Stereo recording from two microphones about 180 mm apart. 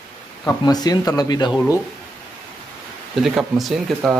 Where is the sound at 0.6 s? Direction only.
20° left (ahead or behind).